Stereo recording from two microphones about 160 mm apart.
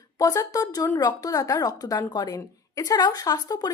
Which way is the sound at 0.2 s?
20° left (ahead or behind).